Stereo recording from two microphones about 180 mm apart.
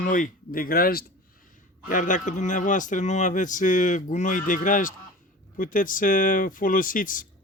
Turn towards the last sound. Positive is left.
turn(degrees=50)  # may be behind; listen again after turning